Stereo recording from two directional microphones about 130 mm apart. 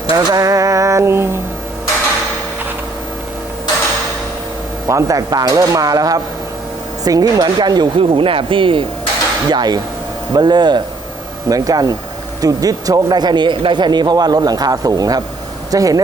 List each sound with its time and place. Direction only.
0.1 s cutlery: 30° right (ahead or behind)
4.9 s cutlery: 25° right (ahead or behind)
7.0 s speech: 30° right (ahead or behind)
11.4 s cutlery: 25° right (ahead or behind)
12.4 s speech: 25° right (ahead or behind)
15.7 s cutlery: 25° right (ahead or behind)